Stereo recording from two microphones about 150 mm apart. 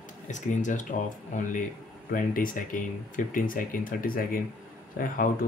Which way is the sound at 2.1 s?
65° left (ahead or behind).